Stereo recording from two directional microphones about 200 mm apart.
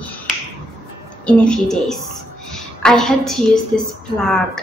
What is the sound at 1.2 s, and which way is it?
A woman's voice, 5° left (ahead or behind).